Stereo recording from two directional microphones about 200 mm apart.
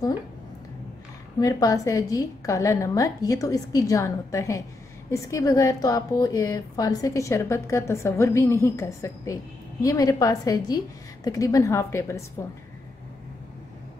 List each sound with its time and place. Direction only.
1.4 s a woman's voice: 20° left (ahead or behind)